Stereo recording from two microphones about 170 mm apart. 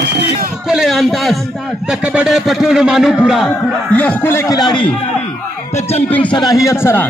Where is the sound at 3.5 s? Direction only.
10° left (ahead or behind).